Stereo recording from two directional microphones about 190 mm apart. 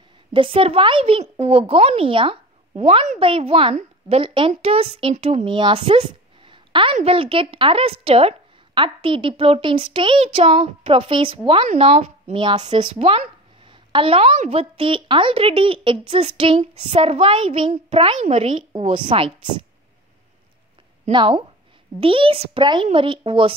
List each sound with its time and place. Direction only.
0.3 s speech: 30° right (ahead or behind)
21.1 s speech: 25° right (ahead or behind)